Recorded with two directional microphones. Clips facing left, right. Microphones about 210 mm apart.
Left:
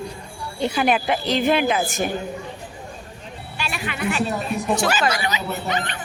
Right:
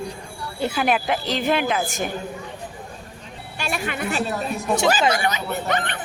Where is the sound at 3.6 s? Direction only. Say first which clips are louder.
Right 2 dB; 45° right (ahead or behind).